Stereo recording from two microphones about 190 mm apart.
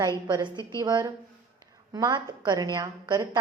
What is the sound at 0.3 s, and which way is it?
A woman's voice, 25° right (ahead or behind).